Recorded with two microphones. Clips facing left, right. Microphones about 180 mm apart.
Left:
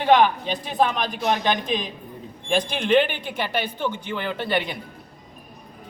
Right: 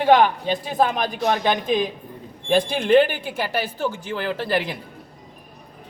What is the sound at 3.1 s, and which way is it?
Speech, 5° right (ahead or behind).